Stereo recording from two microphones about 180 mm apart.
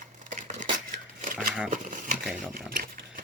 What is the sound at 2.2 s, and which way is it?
Speech, 5° right (ahead or behind).